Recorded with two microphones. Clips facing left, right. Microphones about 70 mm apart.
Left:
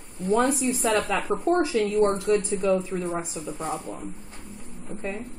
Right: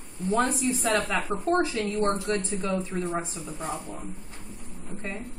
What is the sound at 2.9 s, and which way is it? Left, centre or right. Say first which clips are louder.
Speech: left 1 dB; centre.